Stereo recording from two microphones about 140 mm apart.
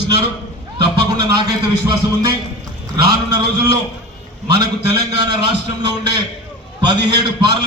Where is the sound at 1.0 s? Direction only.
30° right (ahead or behind).